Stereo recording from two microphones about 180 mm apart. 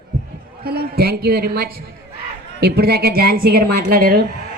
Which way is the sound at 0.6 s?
60° right (ahead or behind).